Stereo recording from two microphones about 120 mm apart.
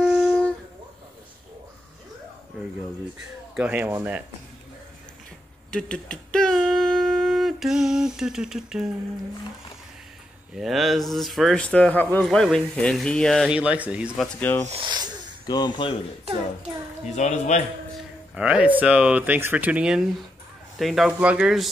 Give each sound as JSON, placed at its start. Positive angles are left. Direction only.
{"t": 0.0, "sound": "a sound", "side_deg": -5}
{"t": 3.5, "sound": "speech", "side_deg": -15}
{"t": 5.7, "sound": "a sound", "side_deg": 10}
{"t": 10.5, "sound": "speech", "side_deg": 0}
{"t": 12.3, "sound": "speech", "side_deg": 5}
{"t": 13.5, "sound": "speech", "side_deg": -10}
{"t": 14.7, "sound": "speech", "side_deg": -40}
{"t": 15.4, "sound": "a man's voice", "side_deg": 35}
{"t": 17.0, "sound": "speech", "side_deg": 75}
{"t": 18.3, "sound": "speech", "side_deg": -10}